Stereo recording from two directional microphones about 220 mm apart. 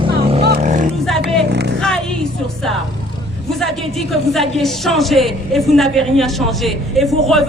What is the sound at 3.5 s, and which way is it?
Speech, centre (ahead or behind).